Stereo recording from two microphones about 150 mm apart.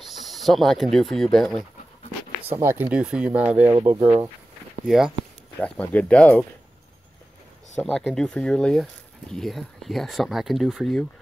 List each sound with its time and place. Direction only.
0.0 s speech: centre (ahead or behind)
2.5 s speech: 15° right (ahead or behind)
4.8 s speech: centre (ahead or behind)
5.6 s speech: 10° left (ahead or behind)
8.0 s speech: 5° left (ahead or behind)